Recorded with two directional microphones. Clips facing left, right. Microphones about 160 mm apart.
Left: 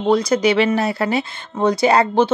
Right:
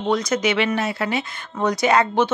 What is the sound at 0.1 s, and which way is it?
Speech, 30° left (ahead or behind).